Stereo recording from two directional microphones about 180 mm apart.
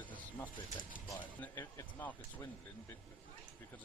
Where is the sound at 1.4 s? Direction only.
15° left (ahead or behind).